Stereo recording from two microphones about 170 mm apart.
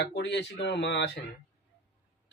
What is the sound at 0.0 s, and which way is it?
Speech, 80° left.